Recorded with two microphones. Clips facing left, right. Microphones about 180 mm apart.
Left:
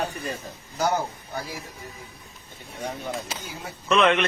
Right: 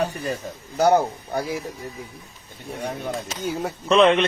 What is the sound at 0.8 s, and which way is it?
Speech, 60° right (ahead or behind).